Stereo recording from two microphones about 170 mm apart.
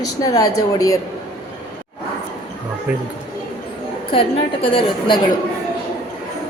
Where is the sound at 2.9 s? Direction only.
10° right (ahead or behind).